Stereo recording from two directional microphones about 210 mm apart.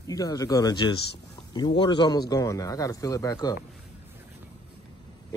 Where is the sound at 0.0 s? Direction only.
15° left (ahead or behind).